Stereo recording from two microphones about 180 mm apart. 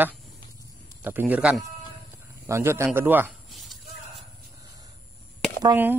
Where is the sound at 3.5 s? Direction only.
Centre (ahead or behind).